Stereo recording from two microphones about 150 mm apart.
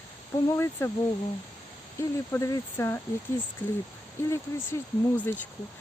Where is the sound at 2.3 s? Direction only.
20° left (ahead or behind).